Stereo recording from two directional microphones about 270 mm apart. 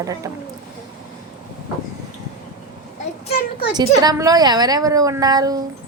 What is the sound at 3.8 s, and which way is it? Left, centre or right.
A woman's voice, centre.